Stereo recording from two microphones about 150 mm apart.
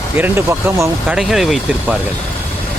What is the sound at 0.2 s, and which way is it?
Speech, 15° right (ahead or behind).